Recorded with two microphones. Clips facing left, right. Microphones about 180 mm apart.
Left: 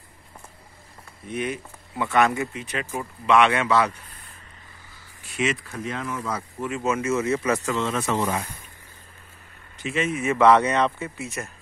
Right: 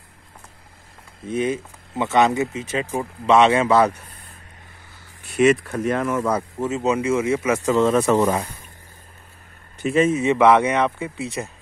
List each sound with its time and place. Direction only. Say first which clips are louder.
1.3 s speech: right 6 dB; 25° right (ahead or behind)
5.3 s speech: right 10 dB; 55° right (ahead or behind)
6.6 s speech: right 3 dB; 20° right (ahead or behind)
7.6 s speech: right 8 dB; 40° right (ahead or behind)
9.8 s speech: right 8 dB; 40° right (ahead or behind)
10.1 s speech: left 2 dB; 20° right (ahead or behind)